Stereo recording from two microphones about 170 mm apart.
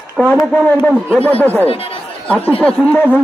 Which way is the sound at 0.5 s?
5° left (ahead or behind).